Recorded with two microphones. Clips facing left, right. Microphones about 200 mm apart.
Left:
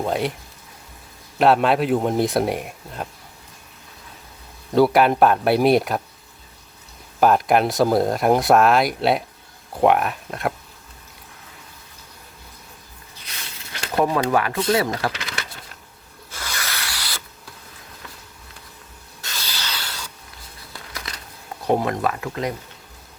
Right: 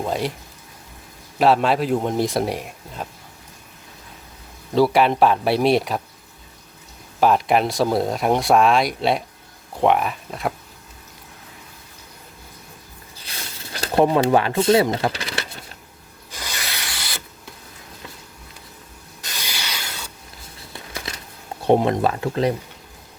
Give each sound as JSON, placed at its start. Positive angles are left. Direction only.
{"t": 0.0, "sound": "speech", "side_deg": 0}
{"t": 1.4, "sound": "speech", "side_deg": 0}
{"t": 4.7, "sound": "speech", "side_deg": 0}
{"t": 7.2, "sound": "speech", "side_deg": 0}
{"t": 13.3, "sound": "a sound", "side_deg": -30}
{"t": 13.7, "sound": "speech", "side_deg": -30}
{"t": 16.3, "sound": "rub", "side_deg": -15}
{"t": 19.2, "sound": "rub", "side_deg": -15}
{"t": 20.7, "sound": "a sound", "side_deg": -25}
{"t": 21.6, "sound": "speech", "side_deg": -25}